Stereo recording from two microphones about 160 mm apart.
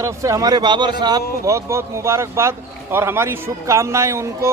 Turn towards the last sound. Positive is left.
turn(degrees=-15)  # may be behind; listen again after turning